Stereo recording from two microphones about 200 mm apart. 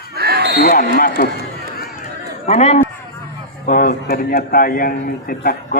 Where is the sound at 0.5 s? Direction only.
45° left (ahead or behind).